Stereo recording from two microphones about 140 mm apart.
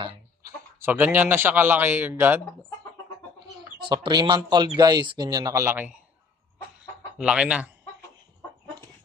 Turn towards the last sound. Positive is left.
turn(degrees=-5)  # may be behind; listen again after turning